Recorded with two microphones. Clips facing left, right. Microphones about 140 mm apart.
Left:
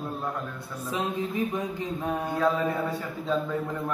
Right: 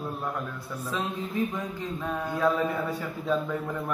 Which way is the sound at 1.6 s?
15° left (ahead or behind).